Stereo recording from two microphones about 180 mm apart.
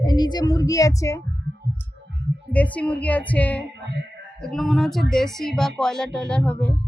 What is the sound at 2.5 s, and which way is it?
A woman's voice, 10° left (ahead or behind).